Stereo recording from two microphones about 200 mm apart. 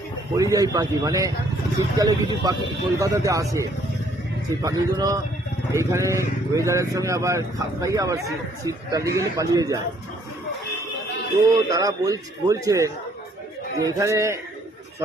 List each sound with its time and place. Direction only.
0.3 s speech: 15° right (ahead or behind)
4.6 s speech: 20° right (ahead or behind)
11.5 s speech: 15° right (ahead or behind)